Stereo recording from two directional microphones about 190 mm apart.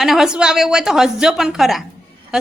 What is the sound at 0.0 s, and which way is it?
A woman's voice, centre (ahead or behind).